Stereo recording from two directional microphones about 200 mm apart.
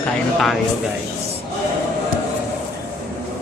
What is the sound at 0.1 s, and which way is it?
Speech, centre (ahead or behind).